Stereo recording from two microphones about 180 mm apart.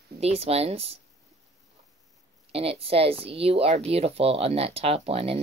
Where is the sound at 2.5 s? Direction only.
30° right (ahead or behind).